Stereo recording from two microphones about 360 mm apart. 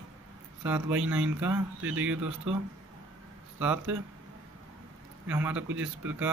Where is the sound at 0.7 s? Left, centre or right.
Centre.